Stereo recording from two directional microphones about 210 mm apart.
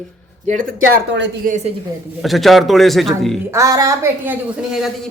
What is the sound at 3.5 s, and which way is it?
Speech, 15° right (ahead or behind).